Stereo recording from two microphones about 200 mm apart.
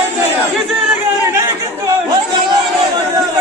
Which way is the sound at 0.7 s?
10° right (ahead or behind).